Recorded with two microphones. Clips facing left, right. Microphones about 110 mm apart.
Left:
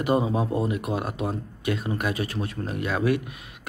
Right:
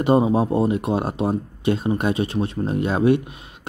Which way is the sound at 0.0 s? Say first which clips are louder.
Right 6 dB; 30° right (ahead or behind).